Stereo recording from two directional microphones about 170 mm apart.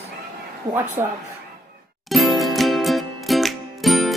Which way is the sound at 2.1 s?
Centre (ahead or behind).